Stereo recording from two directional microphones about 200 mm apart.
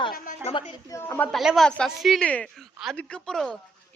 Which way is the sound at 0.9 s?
15° left (ahead or behind).